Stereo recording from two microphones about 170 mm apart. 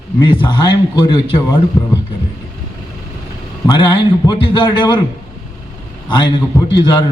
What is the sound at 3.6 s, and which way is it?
A man's voice, 25° left (ahead or behind).